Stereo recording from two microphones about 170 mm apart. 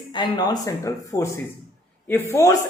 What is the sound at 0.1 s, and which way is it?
Speech, 25° left (ahead or behind).